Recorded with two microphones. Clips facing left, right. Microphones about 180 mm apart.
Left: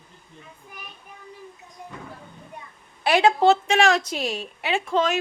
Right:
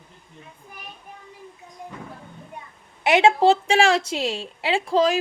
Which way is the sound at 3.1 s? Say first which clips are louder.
Right 1 dB; 25° right (ahead or behind).